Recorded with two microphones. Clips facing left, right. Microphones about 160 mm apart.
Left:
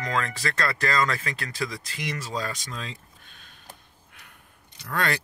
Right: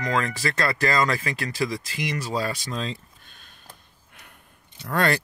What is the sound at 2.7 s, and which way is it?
Speech, 30° right (ahead or behind).